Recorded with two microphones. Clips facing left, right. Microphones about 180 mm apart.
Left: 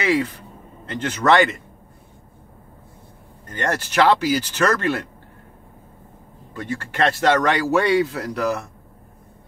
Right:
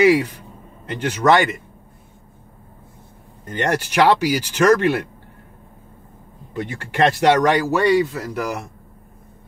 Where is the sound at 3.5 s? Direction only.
15° right (ahead or behind).